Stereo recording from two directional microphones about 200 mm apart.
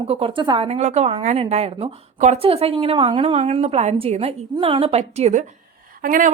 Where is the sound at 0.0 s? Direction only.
30° right (ahead or behind).